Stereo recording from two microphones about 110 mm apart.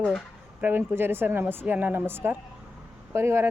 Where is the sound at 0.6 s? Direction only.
20° right (ahead or behind).